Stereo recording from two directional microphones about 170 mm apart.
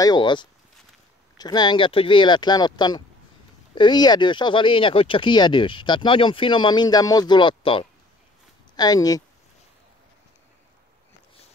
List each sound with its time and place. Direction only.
0.0 s speech: 25° left (ahead or behind)